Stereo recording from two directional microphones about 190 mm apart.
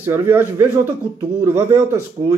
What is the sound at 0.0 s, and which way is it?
Speech, 10° right (ahead or behind).